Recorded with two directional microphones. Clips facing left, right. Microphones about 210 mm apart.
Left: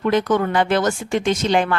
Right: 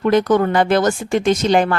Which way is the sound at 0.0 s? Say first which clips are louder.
Right 4 dB; 40° right (ahead or behind).